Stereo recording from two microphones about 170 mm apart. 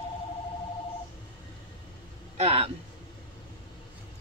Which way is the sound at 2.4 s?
35° right (ahead or behind).